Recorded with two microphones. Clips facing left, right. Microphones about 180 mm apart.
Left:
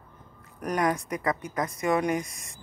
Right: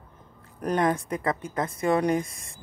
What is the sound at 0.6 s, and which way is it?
Speech, 25° right (ahead or behind).